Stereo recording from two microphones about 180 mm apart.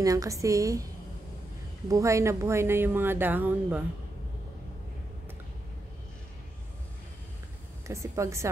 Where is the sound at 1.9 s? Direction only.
15° right (ahead or behind).